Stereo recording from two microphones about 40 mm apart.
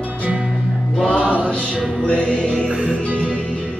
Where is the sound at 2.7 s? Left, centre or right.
Right.